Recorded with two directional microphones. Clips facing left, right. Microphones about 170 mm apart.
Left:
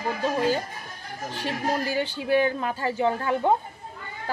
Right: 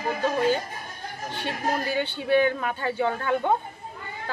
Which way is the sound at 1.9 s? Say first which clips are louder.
Right 2 dB; 35° left (ahead or behind).